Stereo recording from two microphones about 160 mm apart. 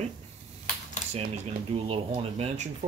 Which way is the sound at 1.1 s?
40° right (ahead or behind).